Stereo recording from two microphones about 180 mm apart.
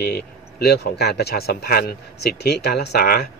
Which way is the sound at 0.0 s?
60° left (ahead or behind).